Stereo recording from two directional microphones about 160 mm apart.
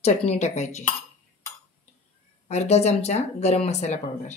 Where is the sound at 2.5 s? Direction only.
45° left (ahead or behind).